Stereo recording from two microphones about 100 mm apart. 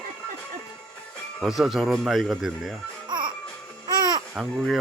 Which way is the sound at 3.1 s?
50° right (ahead or behind).